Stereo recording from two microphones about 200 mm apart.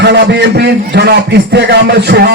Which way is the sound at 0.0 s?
55° right (ahead or behind).